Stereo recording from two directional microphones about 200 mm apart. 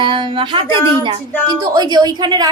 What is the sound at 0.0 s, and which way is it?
A woman's voice, 25° right (ahead or behind).